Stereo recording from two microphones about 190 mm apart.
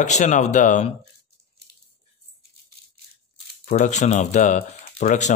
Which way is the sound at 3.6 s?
40° left (ahead or behind).